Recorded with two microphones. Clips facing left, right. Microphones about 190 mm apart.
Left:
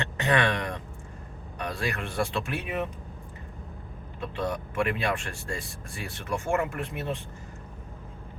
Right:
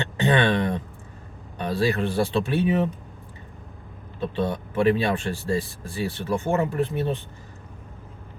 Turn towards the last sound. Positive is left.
turn(degrees=-30)  # may be behind; listen again after turning